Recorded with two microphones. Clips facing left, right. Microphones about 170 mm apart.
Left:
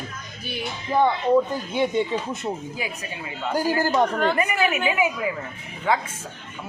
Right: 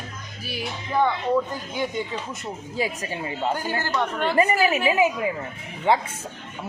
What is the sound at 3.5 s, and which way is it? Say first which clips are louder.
Speech: left 5 dB; 35° left (ahead or behind).